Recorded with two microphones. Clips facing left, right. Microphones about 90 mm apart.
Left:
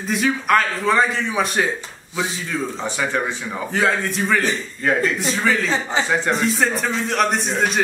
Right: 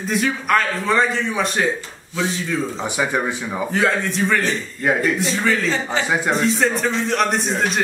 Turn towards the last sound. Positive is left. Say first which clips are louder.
# even
turn(degrees=0)  # may be behind; listen again after turning